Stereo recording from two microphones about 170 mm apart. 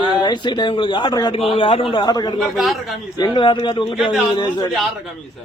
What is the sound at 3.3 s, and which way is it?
Speech, 30° left (ahead or behind).